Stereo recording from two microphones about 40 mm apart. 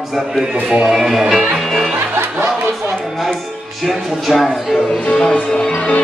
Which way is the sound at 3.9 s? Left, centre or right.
Centre.